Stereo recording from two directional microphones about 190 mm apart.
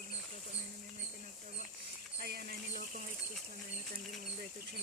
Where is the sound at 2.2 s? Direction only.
55° right (ahead or behind).